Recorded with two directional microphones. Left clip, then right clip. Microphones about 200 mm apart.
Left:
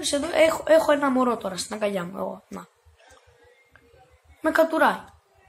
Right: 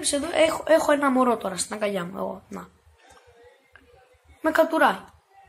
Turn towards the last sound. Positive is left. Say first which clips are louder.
# even
turn(degrees=5)  # may be behind; listen again after turning